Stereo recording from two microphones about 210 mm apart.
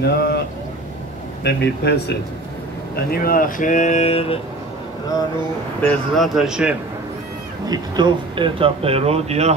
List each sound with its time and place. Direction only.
0.0 s speech: 50° left (ahead or behind)
1.4 s speech: 50° left (ahead or behind); by 4.4 s 30° left (ahead or behind)
5.8 s speech: 5° left (ahead or behind)
7.7 s speech: 20° right (ahead or behind)